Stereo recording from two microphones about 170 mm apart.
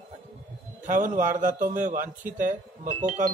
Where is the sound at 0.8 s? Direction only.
55° right (ahead or behind).